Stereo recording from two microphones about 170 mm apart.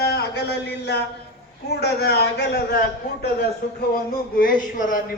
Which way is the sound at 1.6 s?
70° left (ahead or behind).